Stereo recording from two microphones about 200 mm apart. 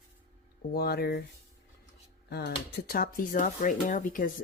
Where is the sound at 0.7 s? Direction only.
50° left (ahead or behind).